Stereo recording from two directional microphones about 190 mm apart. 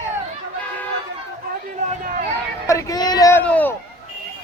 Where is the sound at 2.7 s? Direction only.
15° left (ahead or behind).